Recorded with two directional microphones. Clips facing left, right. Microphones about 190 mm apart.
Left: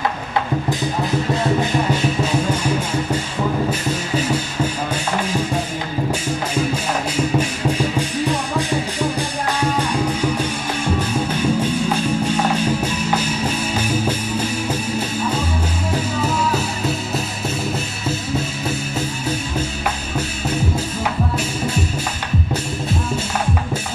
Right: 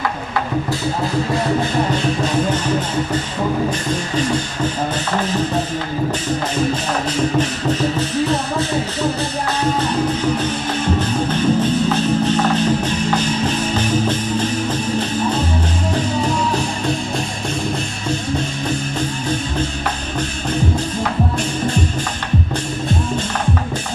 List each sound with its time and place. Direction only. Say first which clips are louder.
11.0 s music: right 2 dB; 10° left (ahead or behind)